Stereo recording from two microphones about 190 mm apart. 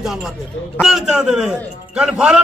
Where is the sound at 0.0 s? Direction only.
Centre (ahead or behind).